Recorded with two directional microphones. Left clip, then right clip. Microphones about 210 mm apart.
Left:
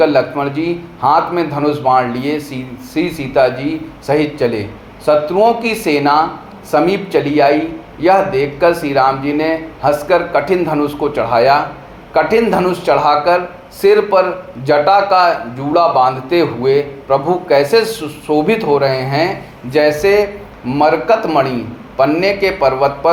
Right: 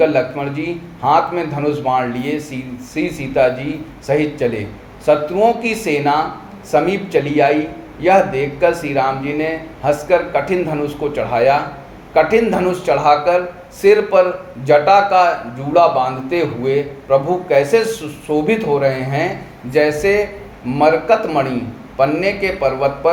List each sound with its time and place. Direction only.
0.0 s a man's voice: 15° left (ahead or behind)